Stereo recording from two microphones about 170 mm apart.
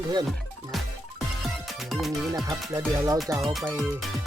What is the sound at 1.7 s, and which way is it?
Speech, centre (ahead or behind).